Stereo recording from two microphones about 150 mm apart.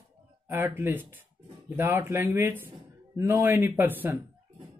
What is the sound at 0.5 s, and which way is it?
Speech, 15° right (ahead or behind).